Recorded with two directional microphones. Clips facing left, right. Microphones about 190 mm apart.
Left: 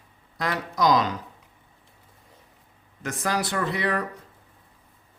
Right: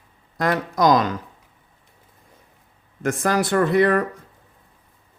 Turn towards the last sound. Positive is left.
turn(degrees=-50)  # may be behind; listen again after turning